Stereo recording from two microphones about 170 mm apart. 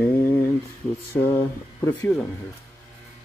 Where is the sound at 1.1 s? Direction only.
15° left (ahead or behind).